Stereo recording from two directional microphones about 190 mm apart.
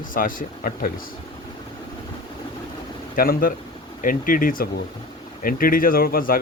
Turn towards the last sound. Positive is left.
turn(degrees=50)  # may be behind; listen again after turning